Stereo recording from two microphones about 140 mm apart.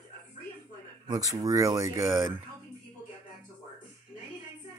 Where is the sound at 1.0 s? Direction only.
25° right (ahead or behind).